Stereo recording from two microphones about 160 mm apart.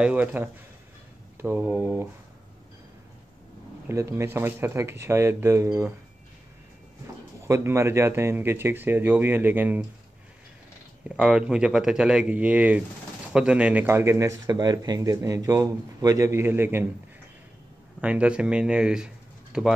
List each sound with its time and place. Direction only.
0.0 s speech: 10° right (ahead or behind)
3.9 s speech: 15° right (ahead or behind)
7.4 s speech: 15° right (ahead or behind)
11.1 s speech: 5° right (ahead or behind)
18.0 s speech: 5° right (ahead or behind)